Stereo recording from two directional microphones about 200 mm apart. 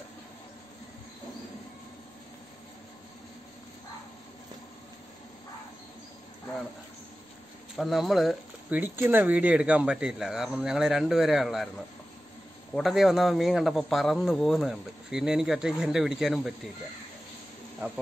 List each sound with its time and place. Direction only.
7.7 s speech: centre (ahead or behind)
12.7 s speech: centre (ahead or behind)